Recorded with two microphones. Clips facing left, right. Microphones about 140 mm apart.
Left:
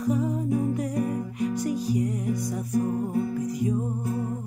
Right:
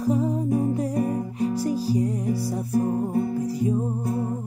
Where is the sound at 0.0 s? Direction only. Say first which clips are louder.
Right 3 dB; 30° right (ahead or behind).